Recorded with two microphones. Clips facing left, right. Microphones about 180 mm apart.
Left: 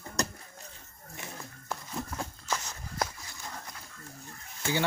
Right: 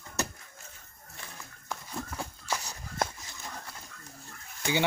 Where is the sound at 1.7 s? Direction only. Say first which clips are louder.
Left 1 dB; 10° right (ahead or behind).